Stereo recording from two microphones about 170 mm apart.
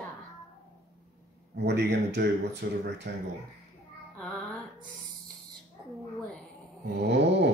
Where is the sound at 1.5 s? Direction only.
80° right.